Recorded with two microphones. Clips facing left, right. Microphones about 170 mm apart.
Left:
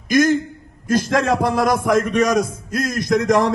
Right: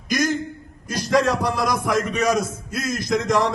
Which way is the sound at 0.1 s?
45° left (ahead or behind).